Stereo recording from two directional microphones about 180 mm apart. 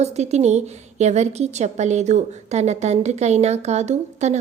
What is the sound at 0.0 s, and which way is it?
A woman's voice, 35° right (ahead or behind).